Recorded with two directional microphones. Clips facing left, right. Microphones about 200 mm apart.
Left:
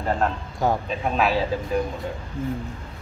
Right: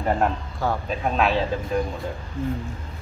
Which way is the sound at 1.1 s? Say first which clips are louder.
Even; 5° left (ahead or behind).